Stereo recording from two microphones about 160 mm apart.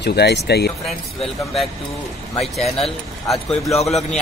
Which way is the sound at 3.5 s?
40° left (ahead or behind).